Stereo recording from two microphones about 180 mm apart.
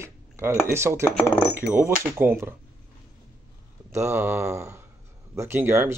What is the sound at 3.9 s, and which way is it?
Speech, 15° right (ahead or behind).